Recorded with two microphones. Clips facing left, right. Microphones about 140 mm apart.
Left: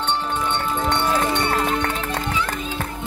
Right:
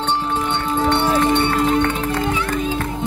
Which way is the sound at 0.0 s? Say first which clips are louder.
Right 3 dB; 35° right (ahead or behind).